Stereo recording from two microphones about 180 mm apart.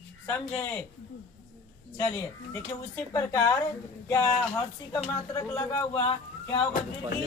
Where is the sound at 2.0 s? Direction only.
10° left (ahead or behind).